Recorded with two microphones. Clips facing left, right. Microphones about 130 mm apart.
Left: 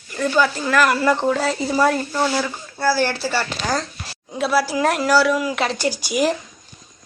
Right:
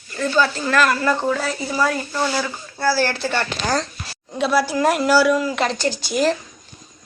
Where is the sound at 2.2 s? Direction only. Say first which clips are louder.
Left 1 dB; 5° left (ahead or behind).